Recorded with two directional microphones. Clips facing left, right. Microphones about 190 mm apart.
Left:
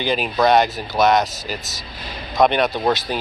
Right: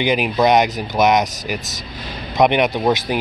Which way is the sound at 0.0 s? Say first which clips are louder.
Right 2 dB; 15° right (ahead or behind).